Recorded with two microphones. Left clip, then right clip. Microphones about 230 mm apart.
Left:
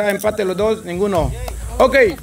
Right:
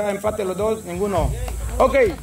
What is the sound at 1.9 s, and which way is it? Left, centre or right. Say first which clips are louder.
Speech: left 4 dB; left.